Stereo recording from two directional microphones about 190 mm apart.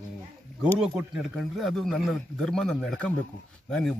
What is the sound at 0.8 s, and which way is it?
A man's voice, 5° right (ahead or behind).